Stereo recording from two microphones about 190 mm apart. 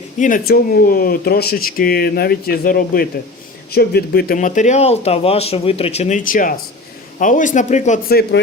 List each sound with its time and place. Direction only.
0.2 s speech: 45° left (ahead or behind)
8.1 s speech: 50° left (ahead or behind)